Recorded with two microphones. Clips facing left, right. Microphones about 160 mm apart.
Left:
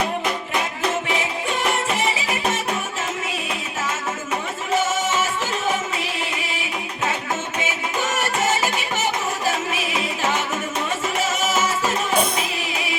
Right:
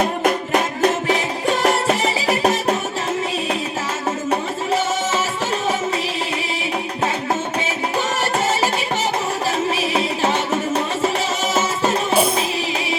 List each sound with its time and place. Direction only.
0.0 s music: 50° right (ahead or behind)
9.7 s music: 35° right (ahead or behind)
11.5 s music: 30° right (ahead or behind)